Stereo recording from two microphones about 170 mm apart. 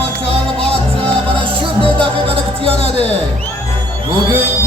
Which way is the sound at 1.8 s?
35° right (ahead or behind).